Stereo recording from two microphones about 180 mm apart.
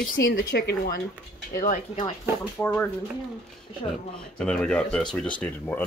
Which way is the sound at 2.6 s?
10° left (ahead or behind).